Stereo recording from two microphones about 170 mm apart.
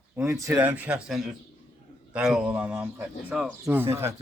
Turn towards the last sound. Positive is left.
turn(degrees=-15)  # may be behind; listen again after turning